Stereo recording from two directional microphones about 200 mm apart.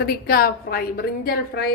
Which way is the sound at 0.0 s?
50° left (ahead or behind).